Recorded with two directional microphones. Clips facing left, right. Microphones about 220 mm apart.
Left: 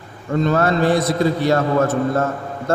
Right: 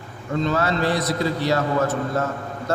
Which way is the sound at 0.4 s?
50° left (ahead or behind).